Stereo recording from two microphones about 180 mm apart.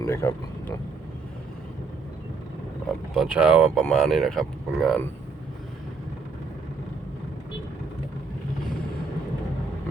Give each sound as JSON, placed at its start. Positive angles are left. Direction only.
{"t": 0.0, "sound": "speech", "side_deg": 15}
{"t": 3.2, "sound": "speech", "side_deg": -5}